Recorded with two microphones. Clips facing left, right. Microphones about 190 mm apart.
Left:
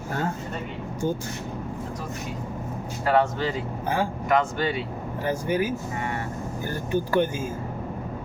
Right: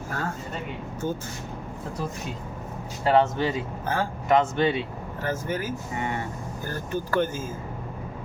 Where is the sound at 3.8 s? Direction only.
15° left (ahead or behind).